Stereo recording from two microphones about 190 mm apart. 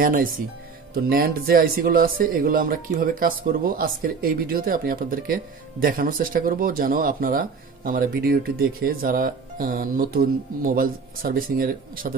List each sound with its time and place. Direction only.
0.0 s speech: 45° right (ahead or behind)